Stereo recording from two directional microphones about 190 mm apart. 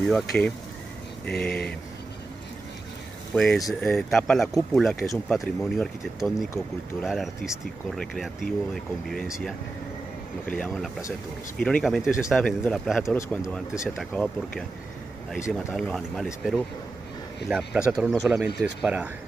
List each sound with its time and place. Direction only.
0.0 s speech: 5° left (ahead or behind)
3.3 s speech: centre (ahead or behind)
10.4 s speech: 5° left (ahead or behind)
15.7 s speech: centre (ahead or behind)
17.5 s speech: 5° right (ahead or behind)